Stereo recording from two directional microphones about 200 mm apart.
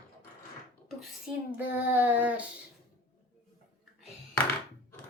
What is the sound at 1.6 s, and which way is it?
Child singing, 10° right (ahead or behind).